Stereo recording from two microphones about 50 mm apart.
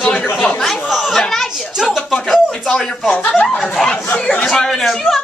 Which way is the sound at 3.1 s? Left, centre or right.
Left.